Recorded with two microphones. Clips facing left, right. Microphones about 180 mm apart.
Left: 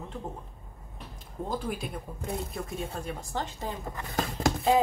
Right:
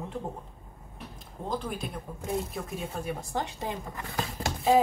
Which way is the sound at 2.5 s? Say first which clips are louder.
Even; 5° right (ahead or behind).